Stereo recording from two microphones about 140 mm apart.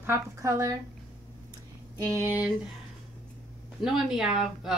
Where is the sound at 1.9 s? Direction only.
30° right (ahead or behind).